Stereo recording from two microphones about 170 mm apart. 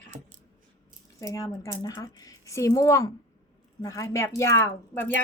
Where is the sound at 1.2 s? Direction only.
20° left (ahead or behind).